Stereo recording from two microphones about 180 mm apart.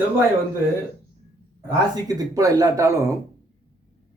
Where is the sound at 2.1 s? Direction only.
20° right (ahead or behind).